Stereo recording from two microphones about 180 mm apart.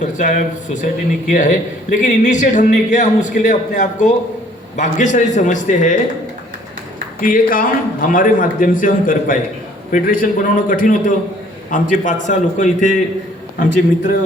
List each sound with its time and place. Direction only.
0.0 s a man's voice: 45° left (ahead or behind)
7.2 s a man's voice: 50° left (ahead or behind)